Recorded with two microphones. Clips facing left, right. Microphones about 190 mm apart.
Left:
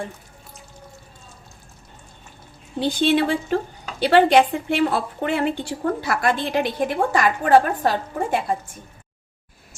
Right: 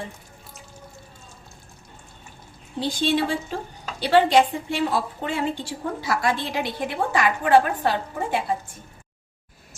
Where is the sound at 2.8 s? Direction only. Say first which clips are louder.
Left 4 dB; 60° left (ahead or behind); by 8.3 s 45° left (ahead or behind).